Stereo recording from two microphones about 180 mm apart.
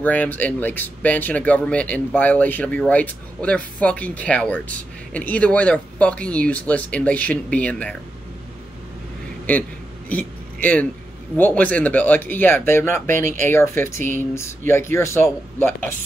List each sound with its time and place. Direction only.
0.0 s speech: 10° left (ahead or behind)
9.5 s a sound: 10° left (ahead or behind)
11.3 s speech: 10° left (ahead or behind)